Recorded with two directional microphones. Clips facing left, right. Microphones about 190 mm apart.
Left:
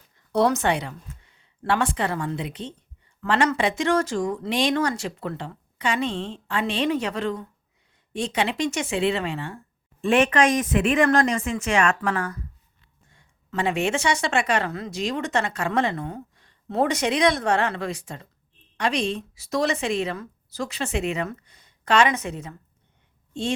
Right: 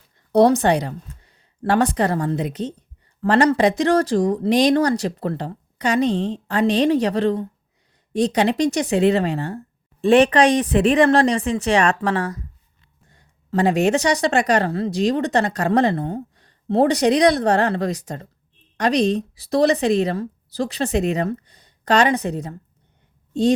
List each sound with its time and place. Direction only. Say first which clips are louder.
0.3 s a woman's voice: right 6 dB; 35° right (ahead or behind)